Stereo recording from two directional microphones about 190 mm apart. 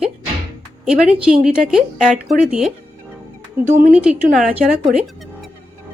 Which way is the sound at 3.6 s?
45° right (ahead or behind).